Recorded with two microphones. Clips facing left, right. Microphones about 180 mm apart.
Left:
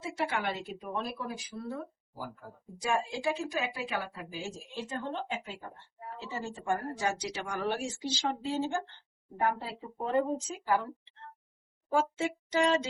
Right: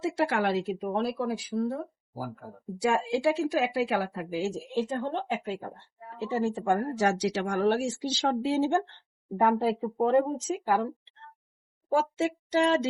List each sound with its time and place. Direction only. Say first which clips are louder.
0.0 s a woman's voice: right 7 dB; 85° right
1.7 s speech: right 5 dB; 30° right (ahead or behind)
2.8 s speech: right 6 dB; 75° right (ahead or behind)